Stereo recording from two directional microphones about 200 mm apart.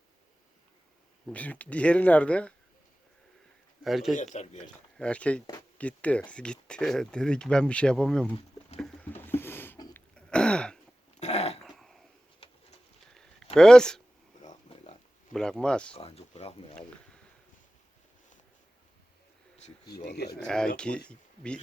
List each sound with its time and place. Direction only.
1.3 s speech: 5° left (ahead or behind)
3.8 s speech: centre (ahead or behind)
4.1 s speech: 40° left (ahead or behind)
4.9 s speech: 5° left (ahead or behind)
8.8 s a sound: 5° left (ahead or behind)
10.2 s throat clearing: 5° left (ahead or behind)
11.2 s dog: 35° left (ahead or behind)
11.6 s a sound: centre (ahead or behind)
13.6 s speech: 5° left (ahead or behind)
15.3 s speech: 5° left (ahead or behind)
16.0 s speech: 30° left (ahead or behind)
20.1 s speech: 55° left (ahead or behind)
20.4 s speech: 5° left (ahead or behind)